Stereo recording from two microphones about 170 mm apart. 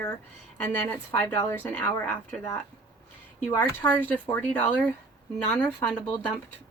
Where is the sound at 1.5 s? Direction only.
10° left (ahead or behind).